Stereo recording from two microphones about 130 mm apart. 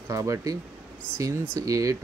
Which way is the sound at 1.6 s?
25° right (ahead or behind).